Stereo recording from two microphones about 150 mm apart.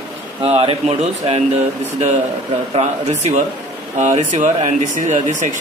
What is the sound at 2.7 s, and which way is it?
Speech, 50° right (ahead or behind).